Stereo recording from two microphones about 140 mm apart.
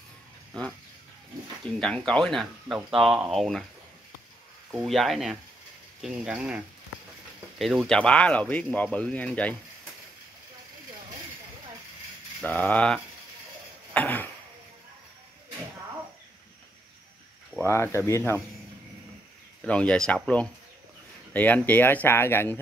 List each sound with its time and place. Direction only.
1.8 s speech: 5° left (ahead or behind)
4.8 s speech: centre (ahead or behind)
12.4 s speech: 10° left (ahead or behind)
13.9 s a sound: 10° left (ahead or behind)
17.6 s speech: 20° left (ahead or behind)
19.6 s speech: 5° left (ahead or behind)
21.3 s speech: 10° left (ahead or behind)